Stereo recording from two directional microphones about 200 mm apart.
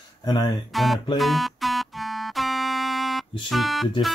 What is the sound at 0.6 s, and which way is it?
Speech, centre (ahead or behind).